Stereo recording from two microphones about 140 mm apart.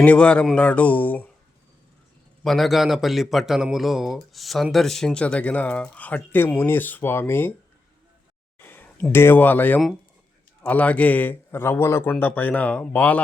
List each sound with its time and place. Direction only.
0.0 s a man's voice: 10° left (ahead or behind)
2.4 s a man's voice: centre (ahead or behind)
8.5 s a man's voice: 15° left (ahead or behind)